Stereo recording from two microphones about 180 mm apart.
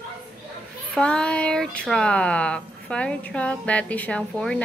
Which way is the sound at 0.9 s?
5° left (ahead or behind).